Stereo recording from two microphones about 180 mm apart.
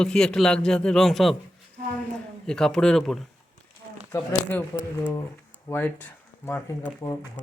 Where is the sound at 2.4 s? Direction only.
5° left (ahead or behind).